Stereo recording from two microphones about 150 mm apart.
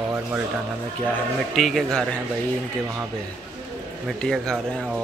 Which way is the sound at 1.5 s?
Centre (ahead or behind).